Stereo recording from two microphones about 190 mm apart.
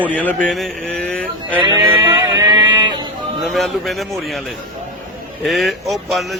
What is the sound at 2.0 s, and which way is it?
Music, 20° right (ahead or behind).